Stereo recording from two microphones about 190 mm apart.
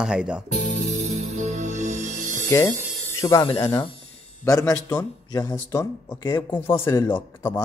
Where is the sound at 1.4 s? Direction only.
40° right (ahead or behind).